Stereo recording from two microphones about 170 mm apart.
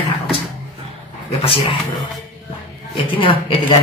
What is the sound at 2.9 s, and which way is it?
Speech, 30° left (ahead or behind).